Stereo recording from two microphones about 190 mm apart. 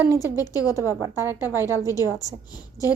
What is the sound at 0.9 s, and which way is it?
A woman's voice, 15° right (ahead or behind).